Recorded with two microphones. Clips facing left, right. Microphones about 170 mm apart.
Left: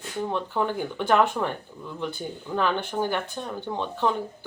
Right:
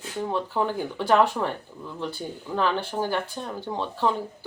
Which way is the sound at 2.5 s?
5° right (ahead or behind).